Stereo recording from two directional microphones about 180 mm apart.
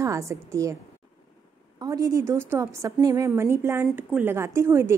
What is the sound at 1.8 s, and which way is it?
A woman's voice, 20° right (ahead or behind).